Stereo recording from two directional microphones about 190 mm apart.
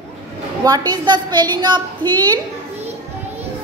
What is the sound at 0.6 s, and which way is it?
A woman's voice, 20° right (ahead or behind).